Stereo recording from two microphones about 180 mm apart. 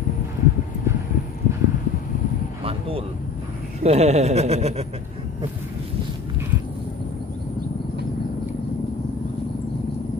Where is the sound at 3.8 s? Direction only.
35° right (ahead or behind).